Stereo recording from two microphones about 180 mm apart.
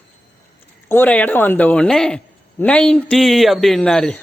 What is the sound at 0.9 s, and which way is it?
Speech, 10° left (ahead or behind).